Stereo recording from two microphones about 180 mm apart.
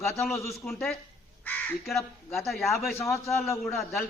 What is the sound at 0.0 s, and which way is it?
A man's voice, centre (ahead or behind).